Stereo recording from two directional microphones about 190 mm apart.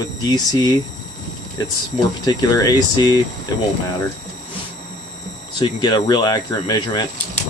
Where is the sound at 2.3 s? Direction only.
20° left (ahead or behind).